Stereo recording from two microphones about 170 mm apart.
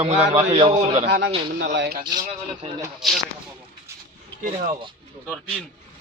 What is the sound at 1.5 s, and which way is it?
Speech, 90° right.